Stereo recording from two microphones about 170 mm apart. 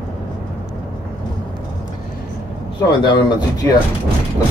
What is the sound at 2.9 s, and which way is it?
Speech, 25° left (ahead or behind).